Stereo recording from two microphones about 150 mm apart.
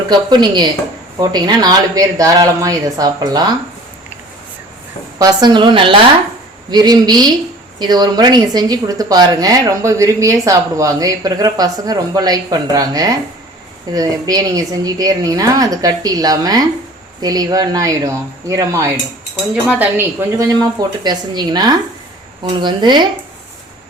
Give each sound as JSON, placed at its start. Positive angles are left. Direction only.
{"t": 0.1, "sound": "speech", "side_deg": -30}
{"t": 5.2, "sound": "a woman's voice", "side_deg": -30}